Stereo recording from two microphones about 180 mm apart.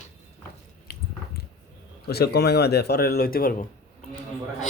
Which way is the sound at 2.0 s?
60° left (ahead or behind).